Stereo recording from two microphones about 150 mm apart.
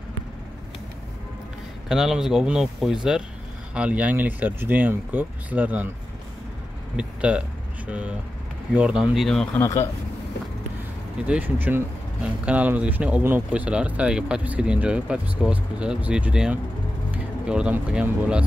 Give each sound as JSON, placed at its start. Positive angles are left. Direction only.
{"t": 1.9, "sound": "speech", "side_deg": -5}
{"t": 7.0, "sound": "speech", "side_deg": -5}
{"t": 9.6, "sound": "a man's voice", "side_deg": 20}
{"t": 11.2, "sound": "speech", "side_deg": -10}